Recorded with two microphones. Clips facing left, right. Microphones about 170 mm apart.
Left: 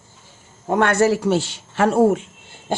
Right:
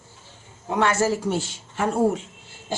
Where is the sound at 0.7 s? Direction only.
55° left (ahead or behind); by 2.2 s 80° left.